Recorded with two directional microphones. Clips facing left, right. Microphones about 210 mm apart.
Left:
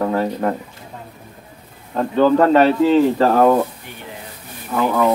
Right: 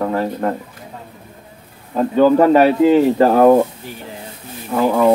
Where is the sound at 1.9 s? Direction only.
10° right (ahead or behind).